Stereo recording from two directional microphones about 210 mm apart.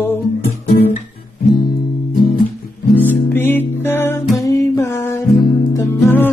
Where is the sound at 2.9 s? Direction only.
10° left (ahead or behind).